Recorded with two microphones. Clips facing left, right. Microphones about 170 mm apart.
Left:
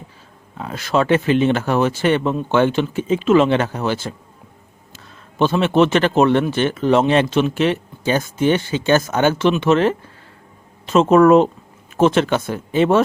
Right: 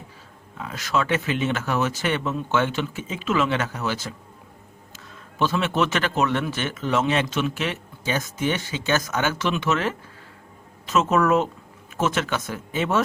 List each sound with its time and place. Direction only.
0.5 s speech: 35° left (ahead or behind)
5.4 s speech: 30° left (ahead or behind)